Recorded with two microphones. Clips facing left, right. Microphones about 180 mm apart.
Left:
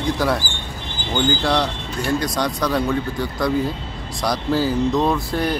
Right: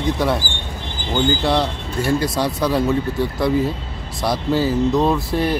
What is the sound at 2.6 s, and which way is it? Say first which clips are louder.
A man's voice: right 3 dB; 5° right (ahead or behind).